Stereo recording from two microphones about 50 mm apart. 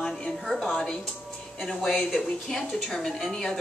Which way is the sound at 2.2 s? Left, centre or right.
Centre.